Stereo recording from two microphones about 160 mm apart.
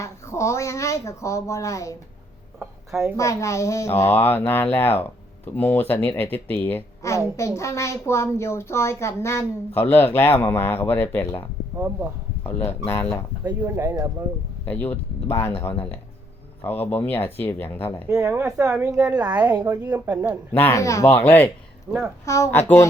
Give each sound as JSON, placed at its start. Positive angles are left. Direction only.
{"t": 0.0, "sound": "speech", "side_deg": 20}
{"t": 3.2, "sound": "a woman's voice", "side_deg": 20}
{"t": 13.4, "sound": "speech", "side_deg": -15}
{"t": 14.6, "sound": "a woman's voice", "side_deg": 10}
{"t": 18.1, "sound": "a woman's voice", "side_deg": -10}
{"t": 20.6, "sound": "a woman's voice", "side_deg": 20}
{"t": 21.9, "sound": "a woman's voice", "side_deg": -5}
{"t": 22.3, "sound": "speech", "side_deg": 15}